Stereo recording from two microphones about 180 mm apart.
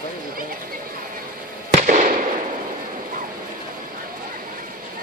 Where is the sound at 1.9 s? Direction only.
45° right (ahead or behind).